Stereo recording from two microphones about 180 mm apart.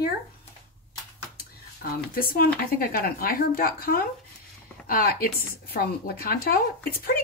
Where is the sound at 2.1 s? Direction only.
55° left (ahead or behind).